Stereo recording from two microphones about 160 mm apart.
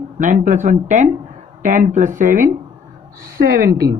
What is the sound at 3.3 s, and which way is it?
Speech, 65° right (ahead or behind).